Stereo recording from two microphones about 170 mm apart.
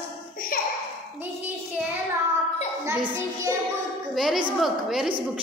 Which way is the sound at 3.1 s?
15° right (ahead or behind).